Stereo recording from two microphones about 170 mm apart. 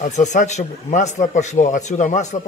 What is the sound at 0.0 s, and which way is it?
A man's voice, 45° left (ahead or behind).